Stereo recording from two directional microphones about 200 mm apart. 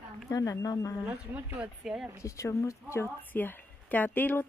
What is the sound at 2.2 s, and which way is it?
A woman's voice, 15° left (ahead or behind).